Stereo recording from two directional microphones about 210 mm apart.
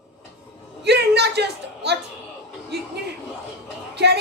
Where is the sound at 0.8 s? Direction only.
55° right (ahead or behind).